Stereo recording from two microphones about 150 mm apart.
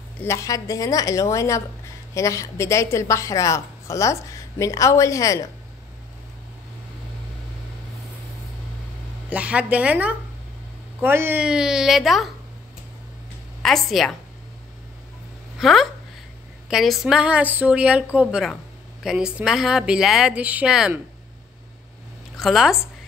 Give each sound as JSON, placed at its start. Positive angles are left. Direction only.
{"t": 0.2, "sound": "a woman's voice", "side_deg": 20}
{"t": 9.3, "sound": "a woman's voice", "side_deg": -10}
{"t": 13.6, "sound": "a woman's voice", "side_deg": 0}
{"t": 15.6, "sound": "a woman's voice", "side_deg": 0}
{"t": 22.4, "sound": "speech", "side_deg": 0}